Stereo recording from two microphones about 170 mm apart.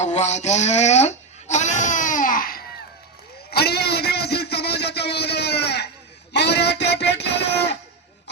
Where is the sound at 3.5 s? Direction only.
70° left (ahead or behind).